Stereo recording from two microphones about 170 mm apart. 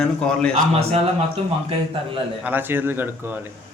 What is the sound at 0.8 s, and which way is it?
Speech, 35° right (ahead or behind).